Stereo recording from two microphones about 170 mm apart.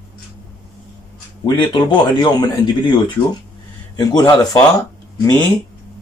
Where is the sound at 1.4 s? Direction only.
25° left (ahead or behind).